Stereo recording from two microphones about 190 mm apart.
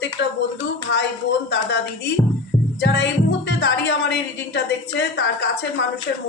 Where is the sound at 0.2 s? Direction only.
65° left (ahead or behind).